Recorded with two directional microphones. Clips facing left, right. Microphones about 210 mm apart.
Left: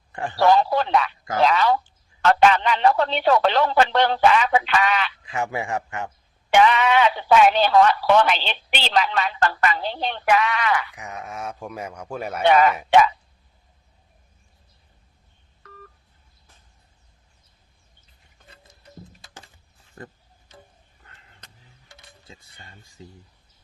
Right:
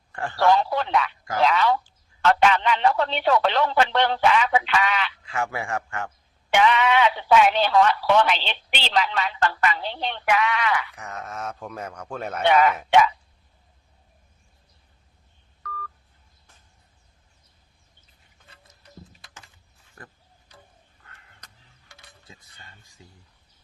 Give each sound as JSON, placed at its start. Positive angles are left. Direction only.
{"t": 0.1, "sound": "a man's voice", "side_deg": 20}
{"t": 0.5, "sound": "speech", "side_deg": 35}
{"t": 5.2, "sound": "speech", "side_deg": 20}
{"t": 6.5, "sound": "speech", "side_deg": 40}
{"t": 10.9, "sound": "speech", "side_deg": 15}
{"t": 12.9, "sound": "speech", "side_deg": 35}
{"t": 15.6, "sound": "telephone dialing", "side_deg": 25}
{"t": 20.0, "sound": "speech", "side_deg": 25}
{"t": 21.0, "sound": "a sound", "side_deg": 20}